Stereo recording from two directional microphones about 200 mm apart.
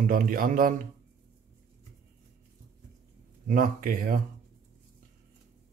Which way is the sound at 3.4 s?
45° right (ahead or behind).